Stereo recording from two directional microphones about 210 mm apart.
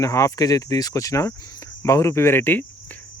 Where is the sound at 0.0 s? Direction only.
15° left (ahead or behind).